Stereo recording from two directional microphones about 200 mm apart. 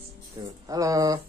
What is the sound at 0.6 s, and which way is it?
Speech, 15° right (ahead or behind).